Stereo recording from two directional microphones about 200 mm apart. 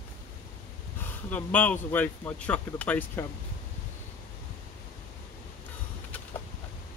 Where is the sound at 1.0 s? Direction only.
10° left (ahead or behind).